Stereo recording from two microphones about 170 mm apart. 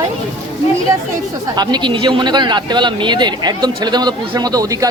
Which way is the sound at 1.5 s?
25° right (ahead or behind).